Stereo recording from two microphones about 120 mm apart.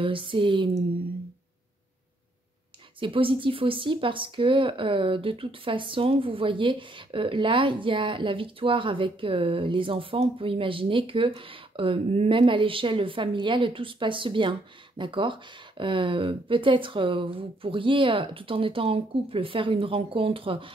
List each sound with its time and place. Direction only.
0.0 s speech: 45° right (ahead or behind)
3.0 s speech: 45° right (ahead or behind)